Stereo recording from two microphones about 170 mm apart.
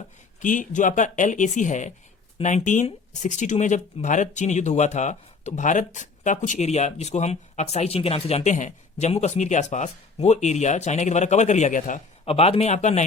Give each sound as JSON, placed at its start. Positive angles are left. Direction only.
{"t": 0.3, "sound": "speech", "side_deg": 50}
{"t": 12.2, "sound": "a man's voice", "side_deg": 35}